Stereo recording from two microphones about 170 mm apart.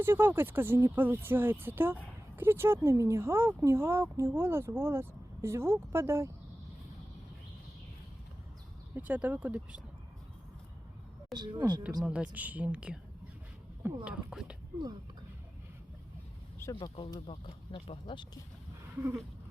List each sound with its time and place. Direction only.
0.0 s speech: 15° right (ahead or behind)
9.0 s speech: 10° right (ahead or behind)
11.3 s speech: 25° right (ahead or behind)
12.0 s speech: 5° right (ahead or behind)
16.7 s speech: 30° left (ahead or behind)